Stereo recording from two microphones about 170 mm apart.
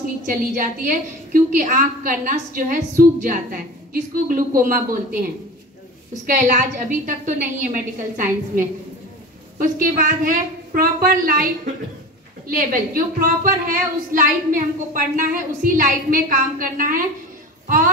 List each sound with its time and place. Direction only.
0.3 s a woman's voice: 50° right (ahead or behind)
6.2 s a woman's voice: 55° right (ahead or behind)